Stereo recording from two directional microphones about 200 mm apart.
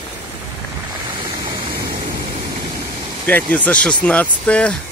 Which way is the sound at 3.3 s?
10° left (ahead or behind).